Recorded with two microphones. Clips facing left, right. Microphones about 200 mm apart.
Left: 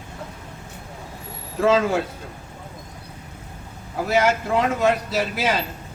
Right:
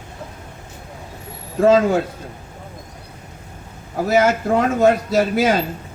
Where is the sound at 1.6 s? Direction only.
40° right (ahead or behind).